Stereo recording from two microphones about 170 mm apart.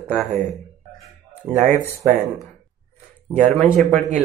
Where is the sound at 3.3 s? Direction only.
30° right (ahead or behind).